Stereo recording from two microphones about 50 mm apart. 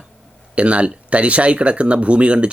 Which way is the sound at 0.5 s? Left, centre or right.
Right.